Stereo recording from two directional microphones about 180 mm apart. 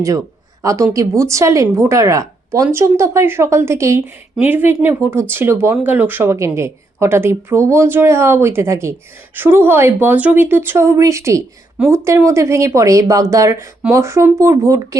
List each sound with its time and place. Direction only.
0.6 s speech: 20° right (ahead or behind)